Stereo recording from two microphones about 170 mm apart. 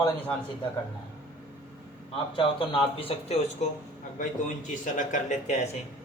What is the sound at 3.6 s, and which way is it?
Speech, 45° left (ahead or behind).